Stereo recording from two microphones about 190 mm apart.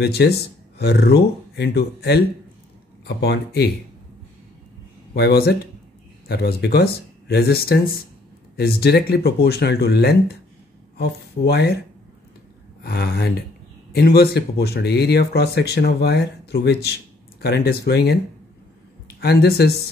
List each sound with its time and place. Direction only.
0.0 s speech: 60° left (ahead or behind)
5.1 s speech: 55° left (ahead or behind)
12.8 s speech: 55° left (ahead or behind)
19.1 s speech: 55° left (ahead or behind)